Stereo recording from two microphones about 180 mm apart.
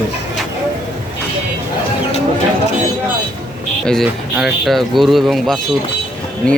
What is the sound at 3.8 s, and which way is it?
Speech, centre (ahead or behind).